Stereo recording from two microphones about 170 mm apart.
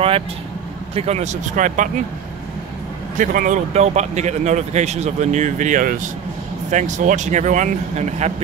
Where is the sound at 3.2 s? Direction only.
50° right (ahead or behind).